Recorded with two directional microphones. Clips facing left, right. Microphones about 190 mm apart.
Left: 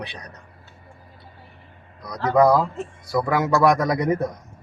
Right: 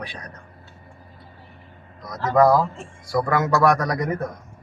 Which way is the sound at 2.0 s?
15° left (ahead or behind).